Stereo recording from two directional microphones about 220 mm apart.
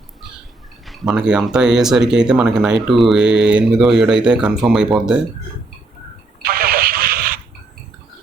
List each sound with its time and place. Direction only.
0.9 s speech: centre (ahead or behind)
6.4 s vehicle: 45° right (ahead or behind)